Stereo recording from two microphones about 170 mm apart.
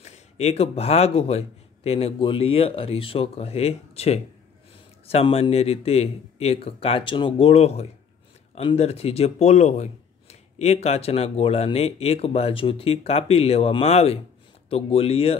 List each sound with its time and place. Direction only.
0.0 s a man's voice: 40° left (ahead or behind)